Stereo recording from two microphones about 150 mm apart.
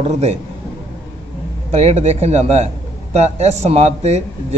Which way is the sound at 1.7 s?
45° right (ahead or behind).